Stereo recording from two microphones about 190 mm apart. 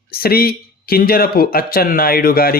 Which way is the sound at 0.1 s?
55° left (ahead or behind).